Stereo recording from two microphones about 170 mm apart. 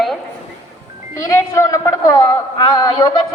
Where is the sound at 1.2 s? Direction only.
15° left (ahead or behind).